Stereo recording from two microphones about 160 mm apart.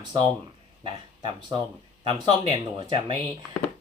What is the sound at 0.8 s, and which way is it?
Speech, 30° right (ahead or behind).